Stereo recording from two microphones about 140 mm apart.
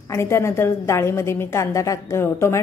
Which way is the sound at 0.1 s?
20° left (ahead or behind).